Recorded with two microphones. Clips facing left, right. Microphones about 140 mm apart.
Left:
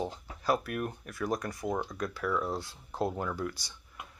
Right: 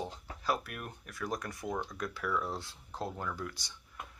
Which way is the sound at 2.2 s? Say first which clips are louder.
Left 3 dB; 30° left (ahead or behind).